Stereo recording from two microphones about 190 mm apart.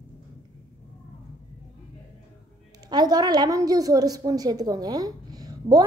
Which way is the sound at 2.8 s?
20° right (ahead or behind).